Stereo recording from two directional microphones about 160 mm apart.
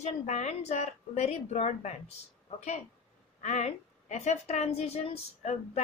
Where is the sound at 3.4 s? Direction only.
45° left (ahead or behind).